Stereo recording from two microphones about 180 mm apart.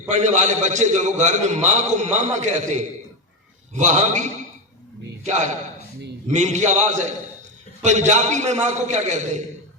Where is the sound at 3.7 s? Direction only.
40° right (ahead or behind).